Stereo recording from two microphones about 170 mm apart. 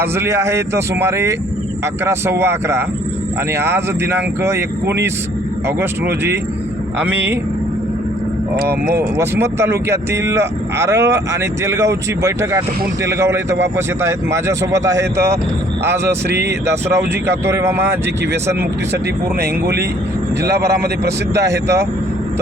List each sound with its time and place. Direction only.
0.0 s speech: 15° right (ahead or behind)
9.0 s speech: 15° right (ahead or behind)
19.4 s speech: 70° right (ahead or behind)